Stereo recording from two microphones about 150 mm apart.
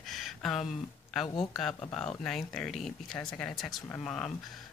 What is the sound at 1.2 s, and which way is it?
Speech, 35° left (ahead or behind).